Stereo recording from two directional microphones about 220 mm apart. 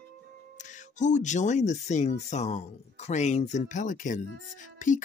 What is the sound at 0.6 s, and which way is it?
Speech, 35° left (ahead or behind).